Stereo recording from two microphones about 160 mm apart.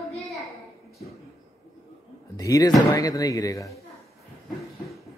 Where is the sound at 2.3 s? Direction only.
20° left (ahead or behind).